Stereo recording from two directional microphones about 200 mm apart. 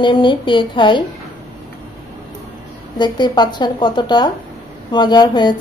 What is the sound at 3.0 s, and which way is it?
A woman's voice, 20° left (ahead or behind).